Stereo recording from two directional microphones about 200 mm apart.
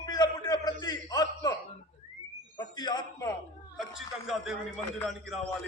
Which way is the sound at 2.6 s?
20° left (ahead or behind).